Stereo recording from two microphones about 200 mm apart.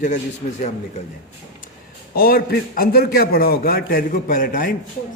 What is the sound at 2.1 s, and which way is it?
A man's voice, 50° left (ahead or behind).